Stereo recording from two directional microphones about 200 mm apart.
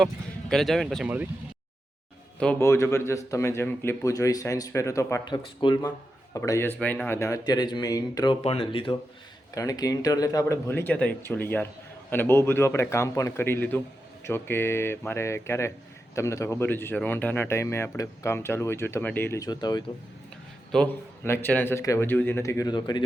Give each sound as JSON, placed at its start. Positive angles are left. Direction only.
{"t": 0.0, "sound": "speech", "side_deg": 0}
{"t": 2.4, "sound": "speech", "side_deg": 10}